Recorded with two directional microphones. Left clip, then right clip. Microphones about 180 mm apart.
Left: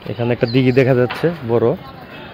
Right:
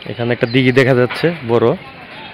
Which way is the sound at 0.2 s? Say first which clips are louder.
Right 2 dB; 5° right (ahead or behind).